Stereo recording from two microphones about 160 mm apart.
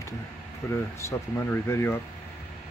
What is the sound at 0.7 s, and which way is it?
Speech, 15° left (ahead or behind).